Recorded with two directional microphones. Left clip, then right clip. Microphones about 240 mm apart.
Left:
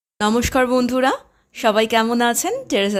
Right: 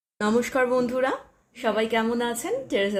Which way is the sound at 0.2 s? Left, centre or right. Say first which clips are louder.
Left 5 dB; left.